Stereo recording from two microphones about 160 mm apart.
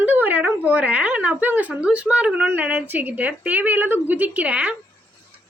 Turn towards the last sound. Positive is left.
turn(degrees=-5)  # may be behind; listen again after turning